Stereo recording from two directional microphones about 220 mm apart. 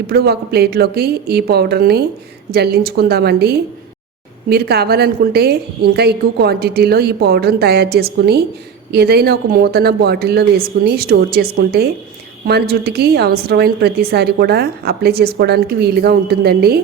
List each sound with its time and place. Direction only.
0.1 s a woman's voice: 45° right (ahead or behind)